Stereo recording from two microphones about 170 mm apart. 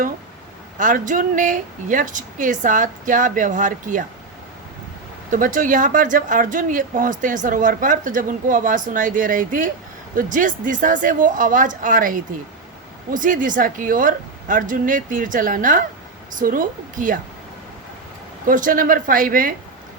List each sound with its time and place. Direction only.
0.8 s speech: 50° right (ahead or behind)
5.3 s speech: 50° right (ahead or behind)
18.4 s speech: 50° right (ahead or behind)